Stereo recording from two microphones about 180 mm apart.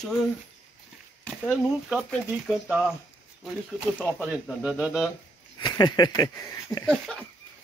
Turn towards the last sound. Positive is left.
turn(degrees=0)  # may be behind; listen again after turning